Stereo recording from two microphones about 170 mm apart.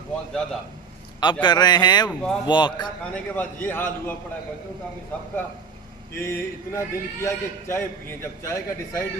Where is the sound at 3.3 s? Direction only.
10° left (ahead or behind).